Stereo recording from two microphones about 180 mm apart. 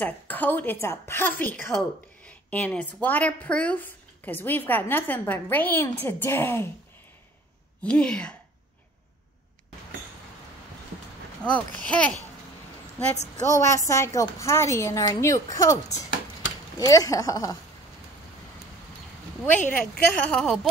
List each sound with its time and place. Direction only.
0.0 s a woman's voice: 10° left (ahead or behind)
7.8 s a woman's voice: 5° left (ahead or behind)
11.5 s a woman's voice: 5° left (ahead or behind)
13.6 s a woman's voice: 15° left (ahead or behind)
19.4 s a woman's voice: 10° left (ahead or behind)